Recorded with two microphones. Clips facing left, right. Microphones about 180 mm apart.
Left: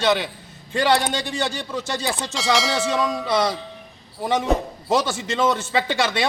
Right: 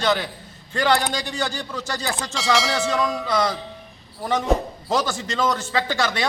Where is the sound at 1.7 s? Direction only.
20° left (ahead or behind).